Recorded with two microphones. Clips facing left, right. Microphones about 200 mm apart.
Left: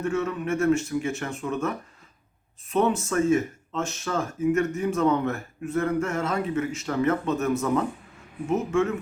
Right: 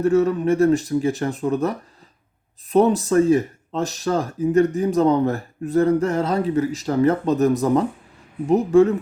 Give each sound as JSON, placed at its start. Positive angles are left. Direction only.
{"t": 0.0, "sound": "speech", "side_deg": -35}